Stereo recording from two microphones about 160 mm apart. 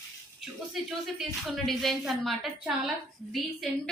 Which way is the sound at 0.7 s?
Centre (ahead or behind).